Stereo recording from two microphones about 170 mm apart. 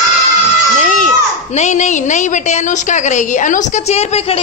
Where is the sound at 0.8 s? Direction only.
45° left (ahead or behind).